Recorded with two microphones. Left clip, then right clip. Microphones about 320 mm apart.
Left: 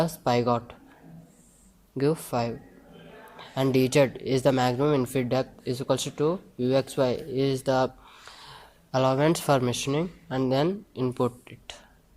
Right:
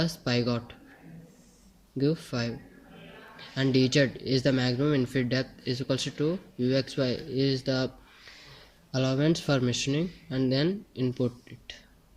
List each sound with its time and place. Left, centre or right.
0.0 s speech: centre
2.0 s speech: centre
8.9 s speech: centre